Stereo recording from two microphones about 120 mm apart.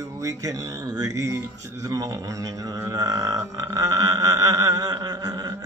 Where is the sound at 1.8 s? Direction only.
30° right (ahead or behind).